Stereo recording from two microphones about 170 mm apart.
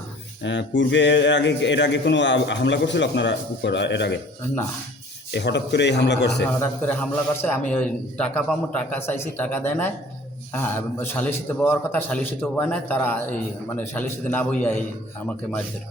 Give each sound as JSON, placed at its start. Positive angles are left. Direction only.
{"t": 0.4, "sound": "a man's voice", "side_deg": 90}
{"t": 5.3, "sound": "a man's voice", "side_deg": 85}
{"t": 6.6, "sound": "a man's voice", "side_deg": 10}